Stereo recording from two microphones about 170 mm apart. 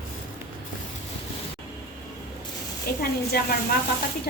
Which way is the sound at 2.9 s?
65° left (ahead or behind).